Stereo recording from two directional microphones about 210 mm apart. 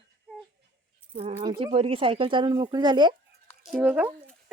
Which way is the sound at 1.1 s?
30° right (ahead or behind).